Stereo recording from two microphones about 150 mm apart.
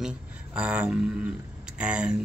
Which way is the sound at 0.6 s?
5° right (ahead or behind).